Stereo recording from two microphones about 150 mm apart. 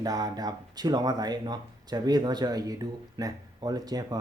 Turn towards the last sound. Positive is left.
turn(degrees=-25)  # may be behind; listen again after turning